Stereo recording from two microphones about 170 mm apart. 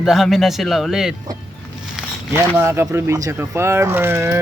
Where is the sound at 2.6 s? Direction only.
15° right (ahead or behind).